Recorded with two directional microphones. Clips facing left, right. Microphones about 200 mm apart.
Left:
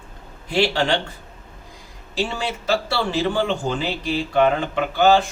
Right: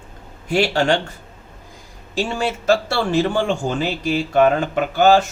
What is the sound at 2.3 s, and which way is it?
Speech, 45° right (ahead or behind).